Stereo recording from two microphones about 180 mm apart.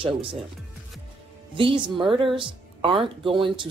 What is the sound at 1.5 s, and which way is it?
Speech, 30° right (ahead or behind).